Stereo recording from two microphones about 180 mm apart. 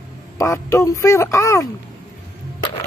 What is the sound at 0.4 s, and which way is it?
Speech, 15° left (ahead or behind).